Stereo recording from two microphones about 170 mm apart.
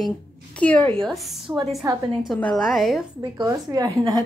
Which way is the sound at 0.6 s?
10° left (ahead or behind).